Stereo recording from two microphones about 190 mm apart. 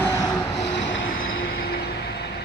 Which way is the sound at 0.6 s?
70° left (ahead or behind).